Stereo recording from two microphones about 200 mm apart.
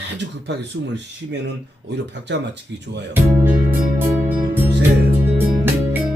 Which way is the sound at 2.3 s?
60° right (ahead or behind).